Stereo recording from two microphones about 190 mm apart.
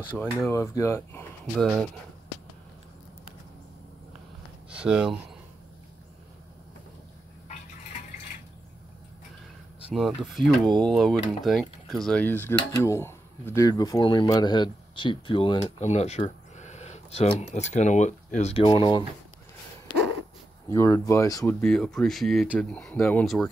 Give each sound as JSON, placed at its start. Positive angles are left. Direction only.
{"t": 0.5, "sound": "speech", "side_deg": 15}
{"t": 1.6, "sound": "speech", "side_deg": 0}
{"t": 4.6, "sound": "speech", "side_deg": -5}
{"t": 9.9, "sound": "speech", "side_deg": 0}
{"t": 20.6, "sound": "speech", "side_deg": 15}
{"t": 21.5, "sound": "speech", "side_deg": 5}